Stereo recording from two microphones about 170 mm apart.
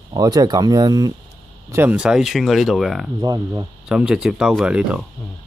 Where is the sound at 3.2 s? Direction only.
25° right (ahead or behind).